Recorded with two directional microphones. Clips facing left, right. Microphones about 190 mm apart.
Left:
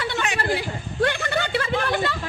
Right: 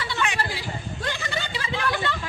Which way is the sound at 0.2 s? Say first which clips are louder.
Left 3 dB; 50° left (ahead or behind).